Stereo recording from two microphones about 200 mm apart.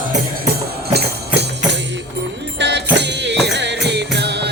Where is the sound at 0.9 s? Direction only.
55° right (ahead or behind).